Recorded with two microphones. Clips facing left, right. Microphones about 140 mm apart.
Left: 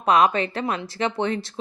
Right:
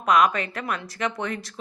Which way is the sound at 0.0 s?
30° left (ahead or behind).